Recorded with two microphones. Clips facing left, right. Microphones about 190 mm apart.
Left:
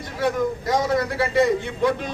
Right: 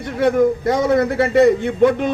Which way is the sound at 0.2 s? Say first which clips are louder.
Right 8 dB; 55° right (ahead or behind).